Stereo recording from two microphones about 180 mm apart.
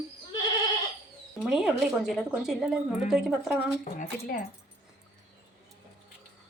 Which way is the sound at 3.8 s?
45° left (ahead or behind).